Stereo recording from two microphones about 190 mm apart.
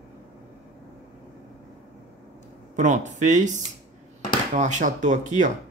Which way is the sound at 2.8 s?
40° right (ahead or behind).